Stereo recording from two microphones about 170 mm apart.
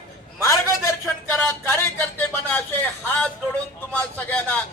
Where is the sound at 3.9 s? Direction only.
10° left (ahead or behind).